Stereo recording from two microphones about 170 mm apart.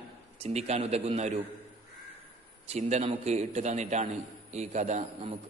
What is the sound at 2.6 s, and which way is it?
A man's voice, 40° right (ahead or behind).